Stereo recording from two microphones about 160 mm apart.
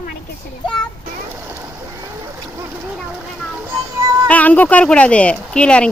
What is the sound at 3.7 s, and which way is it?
Music, 15° right (ahead or behind).